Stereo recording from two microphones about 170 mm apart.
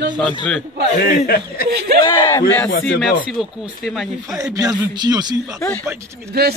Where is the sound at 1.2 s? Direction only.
65° left (ahead or behind).